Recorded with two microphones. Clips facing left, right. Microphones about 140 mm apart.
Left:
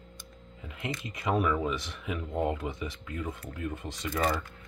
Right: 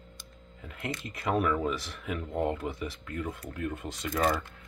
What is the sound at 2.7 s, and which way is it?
Speech, 5° right (ahead or behind).